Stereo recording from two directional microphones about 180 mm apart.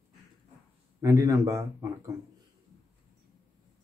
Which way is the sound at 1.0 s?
15° right (ahead or behind).